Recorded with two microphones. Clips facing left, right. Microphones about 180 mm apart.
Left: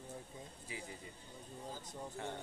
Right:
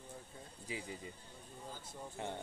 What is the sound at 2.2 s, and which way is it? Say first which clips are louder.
Speech: right 2 dB; 20° right (ahead or behind).